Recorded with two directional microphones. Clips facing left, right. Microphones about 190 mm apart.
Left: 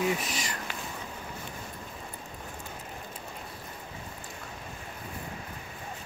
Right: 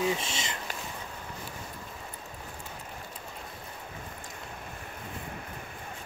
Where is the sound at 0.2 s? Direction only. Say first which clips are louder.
Left 1 dB; 25° right (ahead or behind).